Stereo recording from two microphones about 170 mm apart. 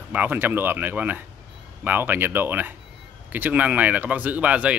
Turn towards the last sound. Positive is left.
turn(degrees=-10)  # may be behind; listen again after turning